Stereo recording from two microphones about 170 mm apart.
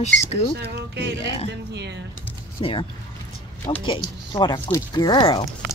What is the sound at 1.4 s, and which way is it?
Speech, 85° right.